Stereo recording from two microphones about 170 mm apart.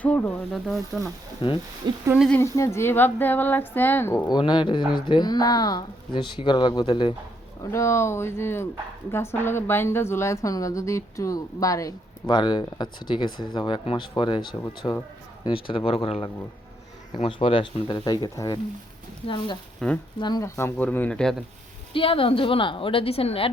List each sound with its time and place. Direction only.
0.0 s speech: 10° left (ahead or behind)
1.4 s a woman's voice: 30° left (ahead or behind)
2.1 s speech: centre (ahead or behind)
2.4 s speech: 15° left (ahead or behind)
4.3 s a woman's voice: 25° left (ahead or behind)
19.8 s speech: 5° left (ahead or behind)
20.1 s a woman's voice: 25° left (ahead or behind)
20.6 s speech: 10° left (ahead or behind)
21.9 s a woman's voice: 30° left (ahead or behind)